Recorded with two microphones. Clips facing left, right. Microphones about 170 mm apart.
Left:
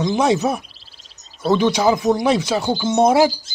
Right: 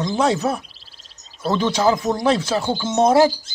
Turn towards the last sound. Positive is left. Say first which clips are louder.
# left 1 dB
turn(degrees=10)  # may be behind; listen again after turning